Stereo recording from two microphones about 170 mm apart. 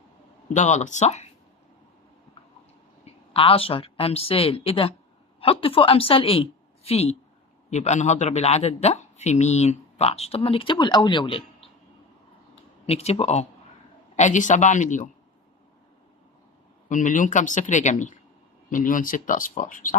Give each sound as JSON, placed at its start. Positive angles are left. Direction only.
{"t": 0.5, "sound": "speech", "side_deg": 45}
{"t": 3.3, "sound": "a man's voice", "side_deg": 35}
{"t": 12.8, "sound": "a man's voice", "side_deg": 35}
{"t": 16.9, "sound": "speech", "side_deg": 50}